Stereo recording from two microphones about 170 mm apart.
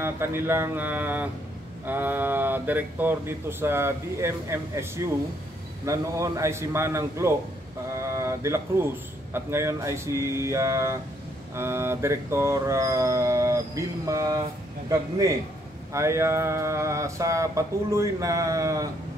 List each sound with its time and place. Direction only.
0.0 s a man's voice: 15° right (ahead or behind)